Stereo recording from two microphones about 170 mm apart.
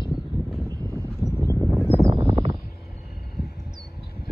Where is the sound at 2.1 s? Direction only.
20° right (ahead or behind).